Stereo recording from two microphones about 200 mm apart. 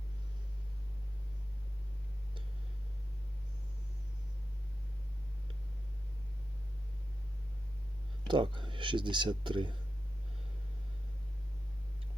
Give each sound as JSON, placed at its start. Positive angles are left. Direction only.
{"t": 8.3, "sound": "speech", "side_deg": -25}